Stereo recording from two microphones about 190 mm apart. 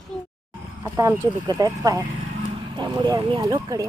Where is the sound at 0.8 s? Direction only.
15° right (ahead or behind).